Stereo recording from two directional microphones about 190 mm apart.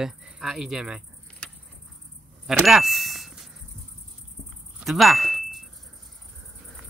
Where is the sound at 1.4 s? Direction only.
5° left (ahead or behind).